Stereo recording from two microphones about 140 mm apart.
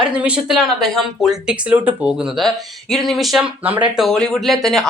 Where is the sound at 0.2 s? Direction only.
5° right (ahead or behind).